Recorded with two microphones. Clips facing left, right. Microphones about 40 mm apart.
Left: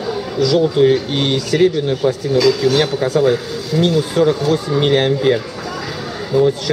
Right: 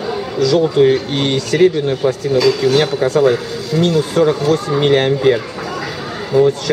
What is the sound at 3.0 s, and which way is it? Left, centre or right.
Speech, centre.